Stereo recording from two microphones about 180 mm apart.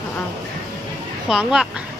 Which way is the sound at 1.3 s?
5° right (ahead or behind).